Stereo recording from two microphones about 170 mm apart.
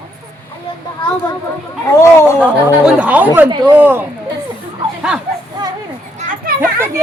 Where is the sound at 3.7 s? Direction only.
10° right (ahead or behind).